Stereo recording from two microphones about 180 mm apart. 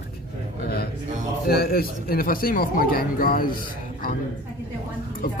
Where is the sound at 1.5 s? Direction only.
55° left (ahead or behind).